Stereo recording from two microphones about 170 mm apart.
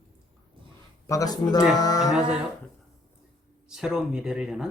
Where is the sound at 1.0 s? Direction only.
20° left (ahead or behind).